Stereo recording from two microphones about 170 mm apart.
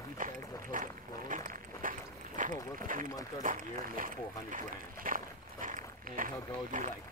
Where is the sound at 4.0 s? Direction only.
50° right (ahead or behind).